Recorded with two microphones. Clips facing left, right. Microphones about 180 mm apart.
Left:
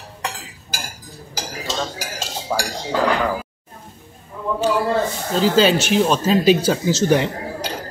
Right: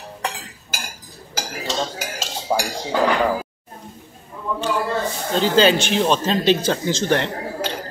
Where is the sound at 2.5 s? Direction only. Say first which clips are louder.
Right 2 dB; 20° right (ahead or behind).